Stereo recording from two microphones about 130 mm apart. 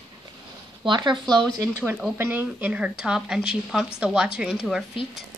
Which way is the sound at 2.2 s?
15° right (ahead or behind).